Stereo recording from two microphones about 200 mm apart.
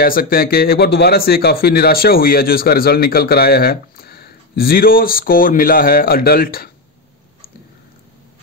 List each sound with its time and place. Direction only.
0.0 s speech: 45° left (ahead or behind)